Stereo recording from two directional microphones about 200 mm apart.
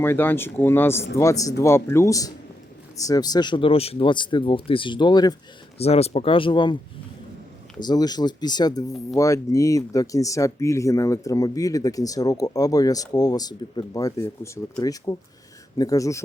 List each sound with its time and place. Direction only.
0.0 s speech: 10° left (ahead or behind)
7.8 s speech: 20° left (ahead or behind)